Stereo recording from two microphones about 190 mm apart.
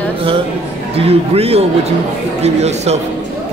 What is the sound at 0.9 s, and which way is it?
Speech, 30° right (ahead or behind).